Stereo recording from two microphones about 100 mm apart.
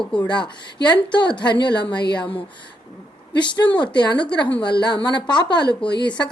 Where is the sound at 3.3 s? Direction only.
50° left (ahead or behind).